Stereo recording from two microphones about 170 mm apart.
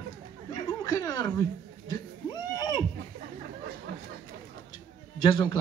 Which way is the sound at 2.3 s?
20° left (ahead or behind).